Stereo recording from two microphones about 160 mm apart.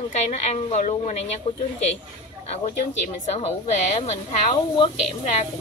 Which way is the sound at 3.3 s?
45° left (ahead or behind).